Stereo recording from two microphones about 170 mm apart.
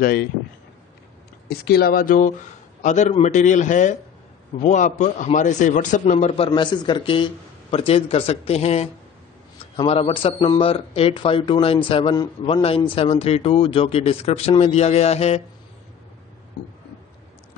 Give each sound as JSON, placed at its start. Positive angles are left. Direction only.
{"t": 1.5, "sound": "a man's voice", "side_deg": 65}
{"t": 9.8, "sound": "speech", "side_deg": 35}
{"t": 16.6, "sound": "a sound", "side_deg": 70}